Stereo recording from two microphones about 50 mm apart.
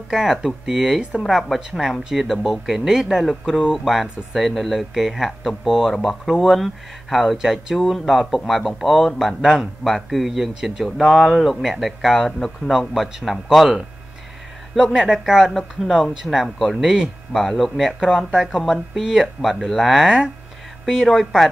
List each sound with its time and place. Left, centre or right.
0.1 s a man's voice: centre
9.4 s a man's voice: centre
9.8 s speech: centre
14.8 s a man's voice: centre
15.5 s speech: centre
15.9 s a man's voice: centre
16.4 s speech: centre
16.7 s a man's voice: centre
17.3 s speech: centre